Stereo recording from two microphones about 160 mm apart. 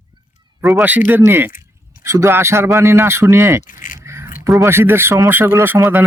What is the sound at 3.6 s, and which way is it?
Speech, 55° left (ahead or behind).